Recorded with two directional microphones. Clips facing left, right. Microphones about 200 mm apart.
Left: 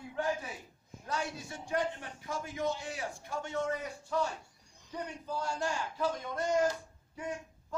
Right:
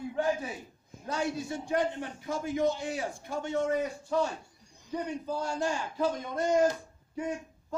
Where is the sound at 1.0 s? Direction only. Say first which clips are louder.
Right 6 dB; 25° right (ahead or behind).